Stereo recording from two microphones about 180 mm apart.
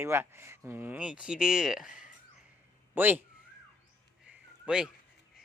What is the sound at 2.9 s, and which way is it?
Speech, 10° right (ahead or behind).